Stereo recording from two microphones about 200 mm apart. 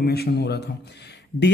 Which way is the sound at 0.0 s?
55° left (ahead or behind).